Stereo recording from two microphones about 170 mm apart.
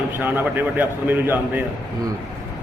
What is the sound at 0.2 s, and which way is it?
A man's voice, 10° right (ahead or behind).